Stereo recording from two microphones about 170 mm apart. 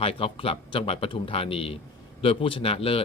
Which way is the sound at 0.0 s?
35° left (ahead or behind).